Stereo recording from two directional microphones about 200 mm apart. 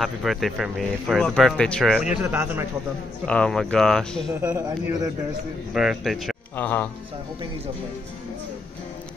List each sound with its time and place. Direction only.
0.0 s speech: centre (ahead or behind)
2.3 s speech: 10° right (ahead or behind)
3.3 s speech: 5° left (ahead or behind)
4.4 s speech: 15° right (ahead or behind)
5.7 s speech: centre (ahead or behind)